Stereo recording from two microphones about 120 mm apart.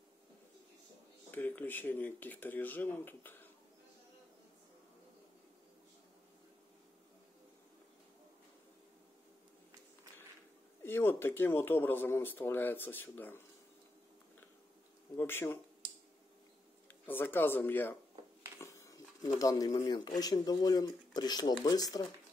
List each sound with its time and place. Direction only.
1.3 s speech: 15° left (ahead or behind)
10.8 s speech: 20° left (ahead or behind)
15.1 s speech: 20° left (ahead or behind)
16.8 s speech: 15° left (ahead or behind)
18.6 s speech: 25° left (ahead or behind)